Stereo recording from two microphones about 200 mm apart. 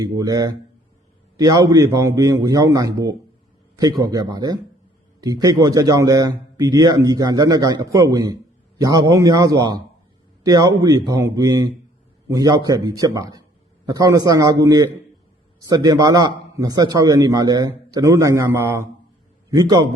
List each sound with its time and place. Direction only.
0.0 s a man's voice: 15° right (ahead or behind)